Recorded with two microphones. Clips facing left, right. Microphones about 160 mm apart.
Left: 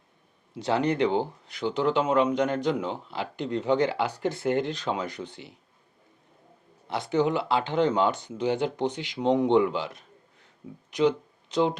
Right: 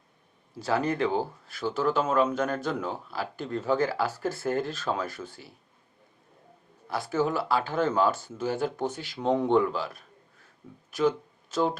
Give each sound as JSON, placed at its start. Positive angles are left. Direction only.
{"t": 0.6, "sound": "speech", "side_deg": 20}
{"t": 6.8, "sound": "speech", "side_deg": 20}